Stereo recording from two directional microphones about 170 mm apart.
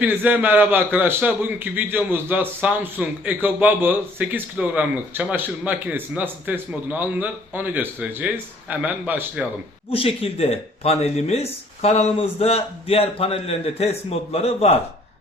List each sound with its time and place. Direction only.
0.0 s a man's voice: 10° right (ahead or behind)
9.9 s speech: 35° left (ahead or behind)